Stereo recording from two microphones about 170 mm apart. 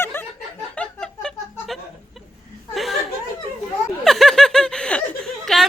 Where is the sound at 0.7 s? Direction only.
5° left (ahead or behind).